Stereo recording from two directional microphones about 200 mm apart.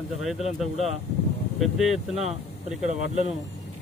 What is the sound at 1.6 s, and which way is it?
Speech, centre (ahead or behind).